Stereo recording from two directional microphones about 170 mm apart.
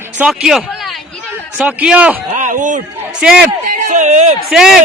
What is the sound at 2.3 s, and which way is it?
Speech, 45° right (ahead or behind).